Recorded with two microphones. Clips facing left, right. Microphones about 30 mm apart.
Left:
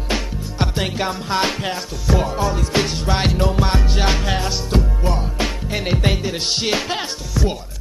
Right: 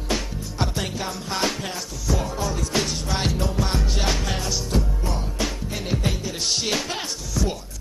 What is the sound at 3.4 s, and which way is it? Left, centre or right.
Music, left.